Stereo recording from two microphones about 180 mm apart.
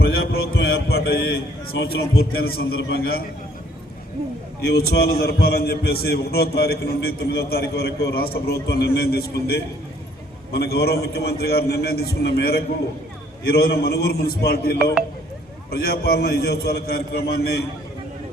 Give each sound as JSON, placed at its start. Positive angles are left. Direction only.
{"t": 0.0, "sound": "a man's voice", "side_deg": 60}
{"t": 4.6, "sound": "a man's voice", "side_deg": 60}